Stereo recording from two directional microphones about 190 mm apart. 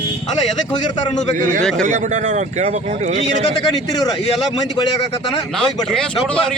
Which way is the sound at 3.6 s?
20° left (ahead or behind).